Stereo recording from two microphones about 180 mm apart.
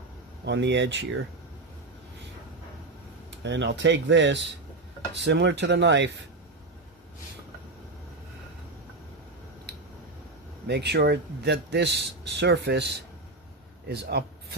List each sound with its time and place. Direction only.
0.4 s speech: 75° right (ahead or behind)
3.4 s speech: 80° right
10.7 s a man's voice: 70° right (ahead or behind)